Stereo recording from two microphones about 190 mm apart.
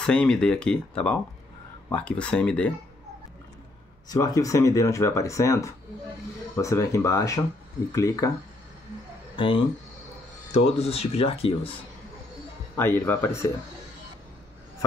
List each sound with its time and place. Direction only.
0.0 s speech: 5° left (ahead or behind)
4.1 s speech: 20° left (ahead or behind)
9.4 s speech: 25° left (ahead or behind)
12.7 s speech: 10° left (ahead or behind)